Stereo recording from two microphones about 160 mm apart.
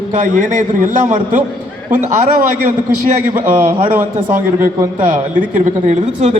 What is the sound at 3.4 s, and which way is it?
Speech, 15° right (ahead or behind).